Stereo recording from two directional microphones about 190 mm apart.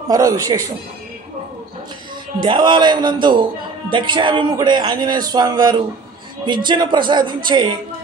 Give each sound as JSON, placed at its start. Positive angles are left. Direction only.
{"t": 0.1, "sound": "a man's voice", "side_deg": -20}
{"t": 2.4, "sound": "a man's voice", "side_deg": -25}